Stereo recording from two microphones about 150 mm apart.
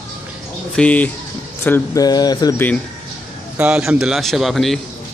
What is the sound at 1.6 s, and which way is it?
Speech, 20° left (ahead or behind).